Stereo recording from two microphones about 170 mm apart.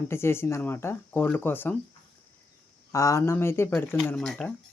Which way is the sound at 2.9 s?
20° left (ahead or behind).